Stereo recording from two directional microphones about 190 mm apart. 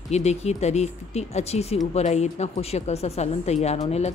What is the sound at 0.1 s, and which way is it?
Speech, 35° left (ahead or behind).